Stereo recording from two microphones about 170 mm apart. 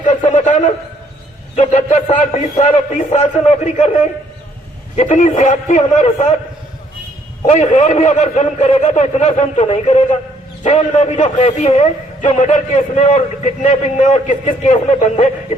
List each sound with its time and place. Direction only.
0.3 s a sound: 45° left (ahead or behind)
1.5 s a man's voice: 40° left (ahead or behind)
7.4 s a man's voice: 40° left (ahead or behind)